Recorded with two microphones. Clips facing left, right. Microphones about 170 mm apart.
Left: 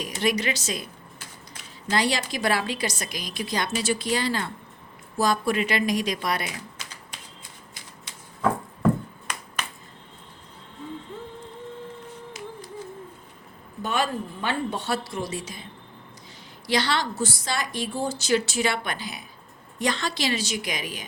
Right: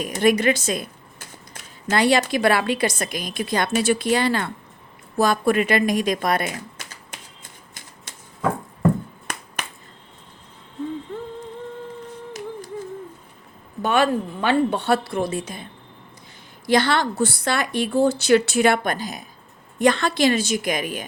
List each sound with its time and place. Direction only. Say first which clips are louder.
0.0 s a woman's voice: right 7 dB; 55° right (ahead or behind)
1.9 s a woman's voice: right 7 dB; 60° right (ahead or behind)
13.8 s a woman's voice: right 7 dB; 65° right (ahead or behind)
16.6 s a woman's voice: right 6 dB; 50° right (ahead or behind)
19.8 s a woman's voice: right 9 dB; 55° right (ahead or behind)